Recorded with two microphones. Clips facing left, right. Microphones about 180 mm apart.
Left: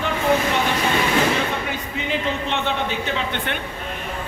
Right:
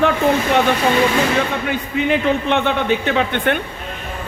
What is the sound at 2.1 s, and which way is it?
A man's voice, 60° right (ahead or behind).